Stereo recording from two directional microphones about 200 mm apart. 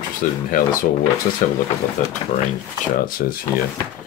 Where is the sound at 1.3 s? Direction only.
35° left (ahead or behind).